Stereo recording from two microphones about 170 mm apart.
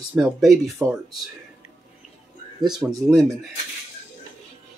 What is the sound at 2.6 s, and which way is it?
Speech, 5° right (ahead or behind).